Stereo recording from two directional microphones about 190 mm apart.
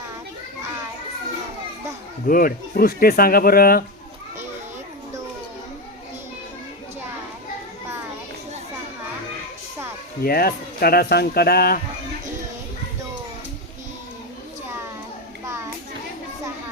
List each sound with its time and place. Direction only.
2.2 s speech: 50° left (ahead or behind)
10.2 s speech: 50° left (ahead or behind)
15.4 s children playing: 15° right (ahead or behind)